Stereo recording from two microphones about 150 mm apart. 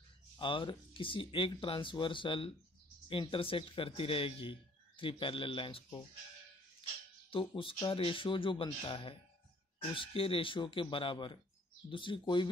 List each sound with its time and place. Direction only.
0.4 s a man's voice: 35° left (ahead or behind)
7.2 s a man's voice: 35° left (ahead or behind)